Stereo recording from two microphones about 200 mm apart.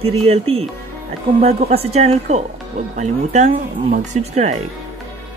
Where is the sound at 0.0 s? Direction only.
30° right (ahead or behind).